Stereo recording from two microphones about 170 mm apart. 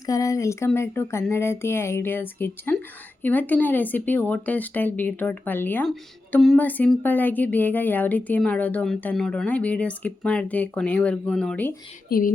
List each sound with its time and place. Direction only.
0.0 s speech: 20° left (ahead or behind)
12.0 s speech: 60° left (ahead or behind)